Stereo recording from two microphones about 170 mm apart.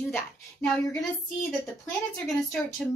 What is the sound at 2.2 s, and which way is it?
Speech, 5° left (ahead or behind).